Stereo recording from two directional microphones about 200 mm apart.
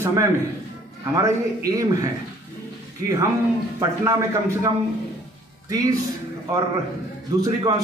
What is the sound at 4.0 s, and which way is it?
A man's voice, 15° right (ahead or behind).